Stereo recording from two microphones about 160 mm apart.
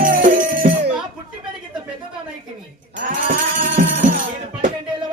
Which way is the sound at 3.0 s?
55° right (ahead or behind).